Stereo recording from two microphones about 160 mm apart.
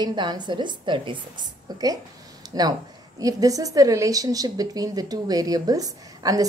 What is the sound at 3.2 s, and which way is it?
A woman's voice, 20° right (ahead or behind).